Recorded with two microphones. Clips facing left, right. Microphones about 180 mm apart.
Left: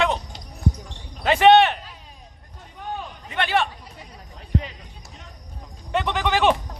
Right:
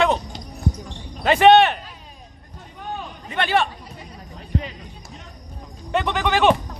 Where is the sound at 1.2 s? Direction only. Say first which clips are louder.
Right 1 dB; 45° right (ahead or behind).